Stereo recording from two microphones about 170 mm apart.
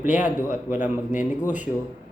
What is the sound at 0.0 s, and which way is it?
A man's voice, 10° right (ahead or behind).